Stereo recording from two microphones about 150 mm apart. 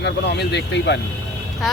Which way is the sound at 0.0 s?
90° left.